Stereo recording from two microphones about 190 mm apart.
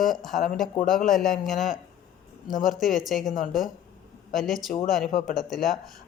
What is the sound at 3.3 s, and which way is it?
Speech, 45° left (ahead or behind).